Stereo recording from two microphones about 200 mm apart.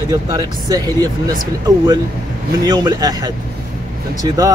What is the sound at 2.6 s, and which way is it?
Speech, 20° right (ahead or behind).